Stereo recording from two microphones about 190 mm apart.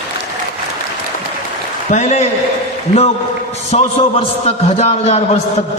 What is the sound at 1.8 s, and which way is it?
A man's voice, 40° left (ahead or behind).